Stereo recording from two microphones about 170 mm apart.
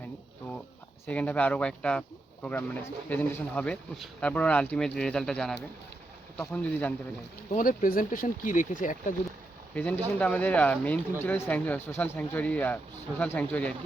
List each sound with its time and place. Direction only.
1.0 s speech: 10° left (ahead or behind)
7.5 s speech: 50° left (ahead or behind)
9.7 s speech: 10° left (ahead or behind)